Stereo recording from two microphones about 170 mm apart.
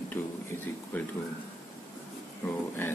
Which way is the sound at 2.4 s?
15° left (ahead or behind).